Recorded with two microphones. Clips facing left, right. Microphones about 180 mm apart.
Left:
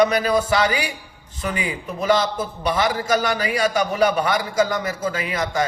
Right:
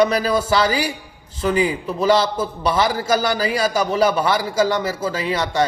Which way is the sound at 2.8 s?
30° right (ahead or behind).